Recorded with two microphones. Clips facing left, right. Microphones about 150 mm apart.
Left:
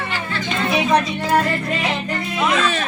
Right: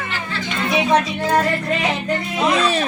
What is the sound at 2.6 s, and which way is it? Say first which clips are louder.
Speech: right 2 dB; 35° right (ahead or behind).